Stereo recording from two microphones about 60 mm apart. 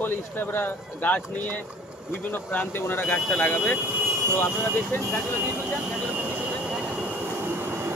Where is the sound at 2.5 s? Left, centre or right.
Left.